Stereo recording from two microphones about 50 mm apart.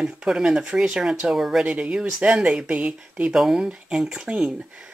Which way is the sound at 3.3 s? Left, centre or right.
Centre.